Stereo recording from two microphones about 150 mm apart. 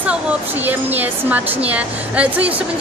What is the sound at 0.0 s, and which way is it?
Speech, 10° right (ahead or behind).